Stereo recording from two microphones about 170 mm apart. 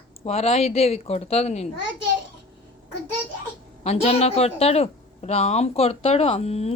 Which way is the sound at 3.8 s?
40° left (ahead or behind).